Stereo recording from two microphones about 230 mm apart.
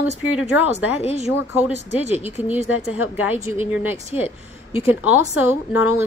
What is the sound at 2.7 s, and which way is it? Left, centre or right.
Speech, left.